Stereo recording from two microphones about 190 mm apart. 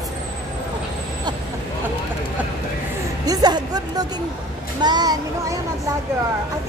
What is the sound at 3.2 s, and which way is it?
Speech, 20° right (ahead or behind).